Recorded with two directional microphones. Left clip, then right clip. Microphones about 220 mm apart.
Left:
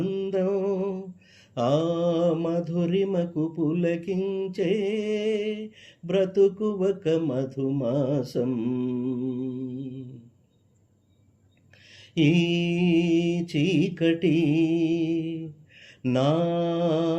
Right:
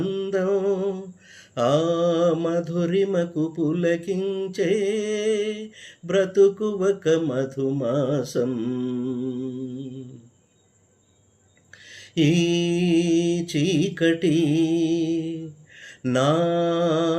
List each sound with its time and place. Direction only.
0.0 s mantra: 20° right (ahead or behind)
11.9 s mantra: 15° right (ahead or behind)